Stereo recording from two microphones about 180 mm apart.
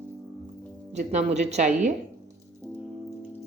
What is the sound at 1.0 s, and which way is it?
Speech, 40° right (ahead or behind).